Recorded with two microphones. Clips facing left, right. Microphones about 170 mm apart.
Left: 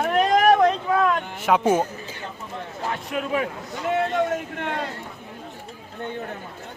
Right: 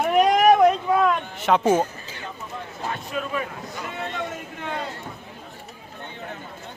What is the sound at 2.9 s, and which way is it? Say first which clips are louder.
Speech: left 3 dB; 70° left (ahead or behind).